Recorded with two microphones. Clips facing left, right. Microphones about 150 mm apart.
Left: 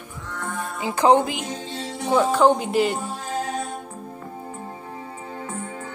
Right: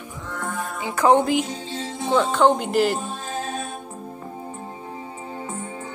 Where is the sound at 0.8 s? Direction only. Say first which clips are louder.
Even; 20° left (ahead or behind).